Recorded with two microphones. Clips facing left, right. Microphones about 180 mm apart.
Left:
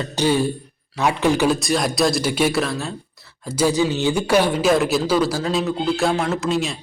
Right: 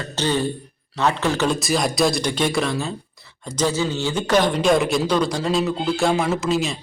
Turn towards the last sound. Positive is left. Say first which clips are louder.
# even
turn(degrees=0)  # may be behind; listen again after turning